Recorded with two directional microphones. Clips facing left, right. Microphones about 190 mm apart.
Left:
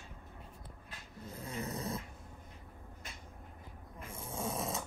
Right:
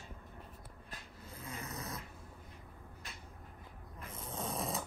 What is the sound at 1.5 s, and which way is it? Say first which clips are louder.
Dog: left 5 dB; 30° left (ahead or behind).